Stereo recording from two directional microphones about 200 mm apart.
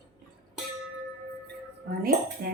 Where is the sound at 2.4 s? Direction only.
50° right (ahead or behind).